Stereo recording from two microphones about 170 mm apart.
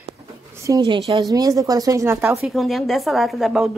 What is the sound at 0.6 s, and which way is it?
A woman's voice, 20° right (ahead or behind).